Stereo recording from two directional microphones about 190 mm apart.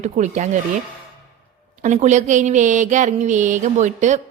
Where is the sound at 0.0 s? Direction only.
40° right (ahead or behind).